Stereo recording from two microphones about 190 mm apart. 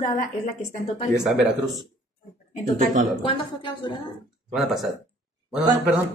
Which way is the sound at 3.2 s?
25° left (ahead or behind).